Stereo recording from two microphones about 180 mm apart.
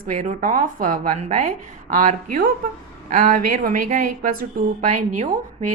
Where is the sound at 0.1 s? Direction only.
45° right (ahead or behind).